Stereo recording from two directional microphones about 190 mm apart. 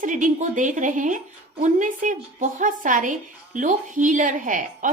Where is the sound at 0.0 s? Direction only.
40° right (ahead or behind).